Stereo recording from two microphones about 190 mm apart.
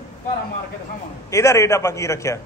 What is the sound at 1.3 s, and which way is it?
A man's voice, 15° left (ahead or behind).